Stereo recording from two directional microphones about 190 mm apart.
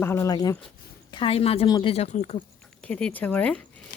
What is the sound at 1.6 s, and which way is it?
Speech, 20° left (ahead or behind).